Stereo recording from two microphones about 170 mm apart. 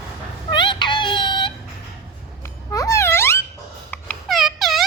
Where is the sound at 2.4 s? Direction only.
20° left (ahead or behind).